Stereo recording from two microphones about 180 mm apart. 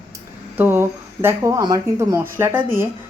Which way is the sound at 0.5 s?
10° right (ahead or behind).